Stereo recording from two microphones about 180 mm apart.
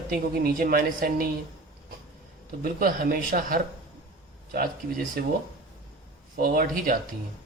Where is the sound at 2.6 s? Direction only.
55° right (ahead or behind).